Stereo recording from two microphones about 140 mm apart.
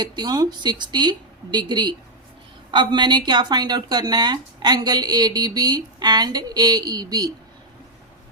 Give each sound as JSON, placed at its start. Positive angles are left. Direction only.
{"t": 0.0, "sound": "a woman's voice", "side_deg": -30}